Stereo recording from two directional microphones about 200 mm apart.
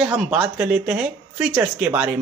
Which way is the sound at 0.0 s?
10° right (ahead or behind).